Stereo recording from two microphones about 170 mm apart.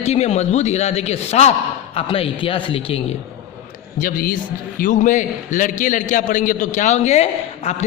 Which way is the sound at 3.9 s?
55° left (ahead or behind).